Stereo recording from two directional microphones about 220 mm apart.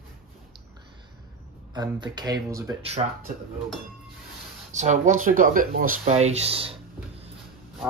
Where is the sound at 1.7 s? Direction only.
20° right (ahead or behind).